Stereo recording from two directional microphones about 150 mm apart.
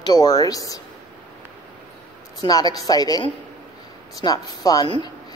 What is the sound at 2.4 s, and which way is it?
A woman's voice, 25° left (ahead or behind).